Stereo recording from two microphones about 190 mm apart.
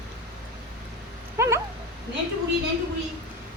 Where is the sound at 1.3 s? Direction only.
15° right (ahead or behind).